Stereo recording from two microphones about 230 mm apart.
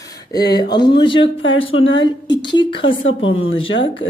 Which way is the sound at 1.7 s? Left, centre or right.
Left.